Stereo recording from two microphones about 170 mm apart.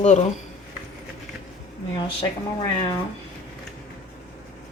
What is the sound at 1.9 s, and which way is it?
Speech, 30° left (ahead or behind).